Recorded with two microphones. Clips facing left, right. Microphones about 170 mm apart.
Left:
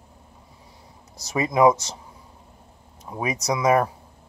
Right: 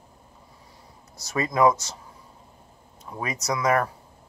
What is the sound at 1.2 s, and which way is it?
Speech, 20° left (ahead or behind).